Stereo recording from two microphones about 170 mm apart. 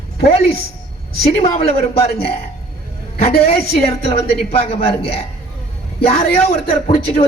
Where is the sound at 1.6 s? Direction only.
35° left (ahead or behind).